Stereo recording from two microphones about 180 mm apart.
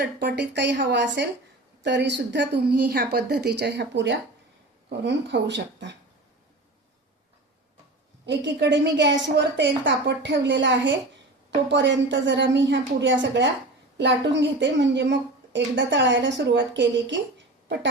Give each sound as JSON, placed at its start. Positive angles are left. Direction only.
{"t": 0.0, "sound": "a woman's voice", "side_deg": -70}
{"t": 8.3, "sound": "a woman's voice", "side_deg": -80}